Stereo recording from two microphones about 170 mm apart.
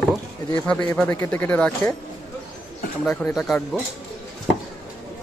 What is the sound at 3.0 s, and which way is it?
Speech, 5° left (ahead or behind).